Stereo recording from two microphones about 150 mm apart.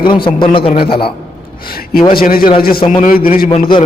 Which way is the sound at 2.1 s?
75° left (ahead or behind).